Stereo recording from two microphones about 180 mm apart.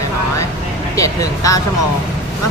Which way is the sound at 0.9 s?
20° left (ahead or behind).